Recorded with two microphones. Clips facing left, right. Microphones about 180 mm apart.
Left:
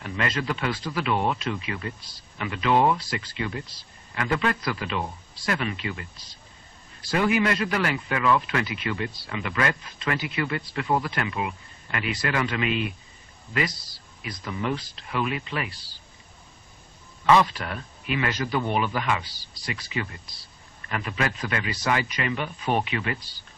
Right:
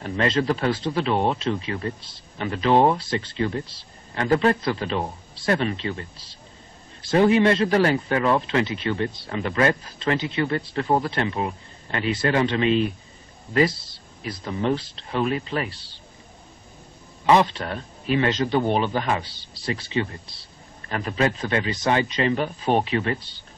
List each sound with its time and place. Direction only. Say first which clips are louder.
0.0 s speech: right 6 dB; 35° right (ahead or behind)
17.3 s speech: right 2 dB; 25° right (ahead or behind)